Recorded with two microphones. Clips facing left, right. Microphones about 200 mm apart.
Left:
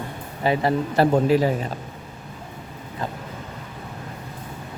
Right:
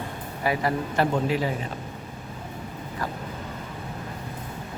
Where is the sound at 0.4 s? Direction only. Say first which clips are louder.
Left 4 dB; 25° left (ahead or behind).